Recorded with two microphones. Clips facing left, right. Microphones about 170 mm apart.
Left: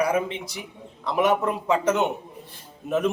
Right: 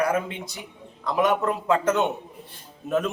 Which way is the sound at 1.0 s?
10° left (ahead or behind).